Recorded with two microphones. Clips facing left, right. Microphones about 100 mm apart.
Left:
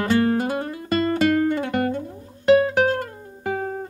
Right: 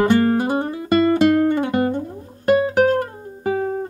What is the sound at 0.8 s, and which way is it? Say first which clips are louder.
Guitar: right 5 dB; 50° right (ahead or behind).